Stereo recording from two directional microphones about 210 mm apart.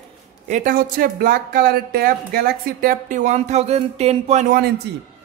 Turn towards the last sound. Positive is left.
turn(degrees=-45)  # may be behind; listen again after turning